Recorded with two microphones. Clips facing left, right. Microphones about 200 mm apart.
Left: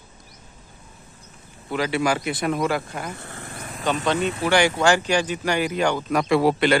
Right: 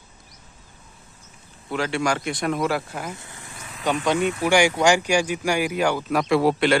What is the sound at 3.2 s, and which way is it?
Vehicle, 60° left (ahead or behind).